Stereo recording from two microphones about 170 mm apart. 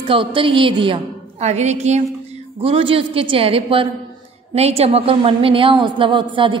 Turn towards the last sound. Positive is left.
turn(degrees=-30)  # may be behind; listen again after turning